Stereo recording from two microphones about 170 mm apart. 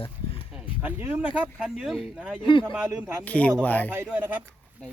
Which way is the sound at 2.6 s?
5° right (ahead or behind).